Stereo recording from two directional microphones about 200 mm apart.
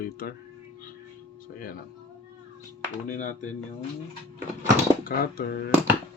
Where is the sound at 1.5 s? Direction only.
45° left (ahead or behind).